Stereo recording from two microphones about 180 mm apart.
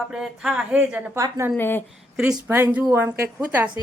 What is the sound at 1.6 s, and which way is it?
Speech, 10° left (ahead or behind).